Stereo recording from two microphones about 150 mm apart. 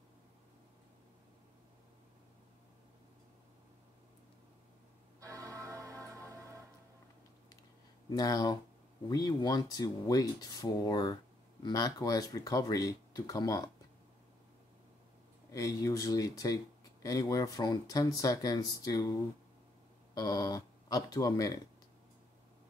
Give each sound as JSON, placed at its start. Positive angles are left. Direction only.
{"t": 5.2, "sound": "music", "side_deg": -20}
{"t": 8.1, "sound": "speech", "side_deg": 25}
{"t": 15.5, "sound": "speech", "side_deg": 20}
{"t": 20.2, "sound": "speech", "side_deg": 25}